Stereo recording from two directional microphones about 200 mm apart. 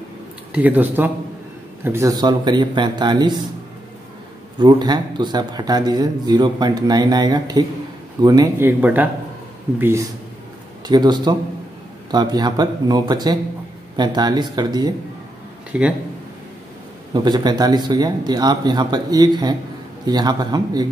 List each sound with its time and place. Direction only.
0.5 s a man's voice: 10° right (ahead or behind)
4.6 s a man's voice: 20° right (ahead or behind)
15.7 s speech: 5° right (ahead or behind)
17.1 s a man's voice: 20° right (ahead or behind)